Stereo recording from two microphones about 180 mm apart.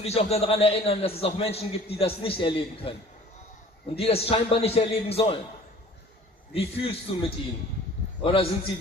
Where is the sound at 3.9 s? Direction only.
35° left (ahead or behind).